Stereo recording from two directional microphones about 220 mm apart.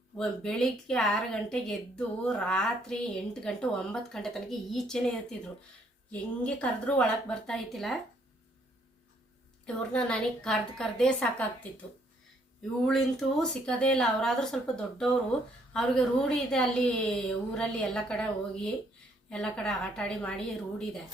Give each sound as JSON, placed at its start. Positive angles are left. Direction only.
{"t": 0.2, "sound": "speech", "side_deg": 5}
{"t": 9.6, "sound": "speech", "side_deg": 5}
{"t": 12.8, "sound": "speech", "side_deg": 0}